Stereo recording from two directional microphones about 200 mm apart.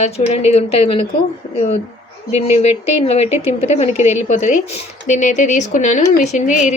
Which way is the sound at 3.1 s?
30° left (ahead or behind).